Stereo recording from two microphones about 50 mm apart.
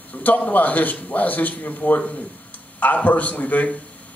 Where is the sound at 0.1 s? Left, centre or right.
Left.